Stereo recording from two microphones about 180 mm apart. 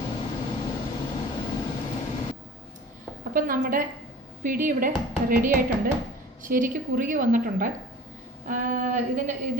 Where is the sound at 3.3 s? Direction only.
50° right (ahead or behind).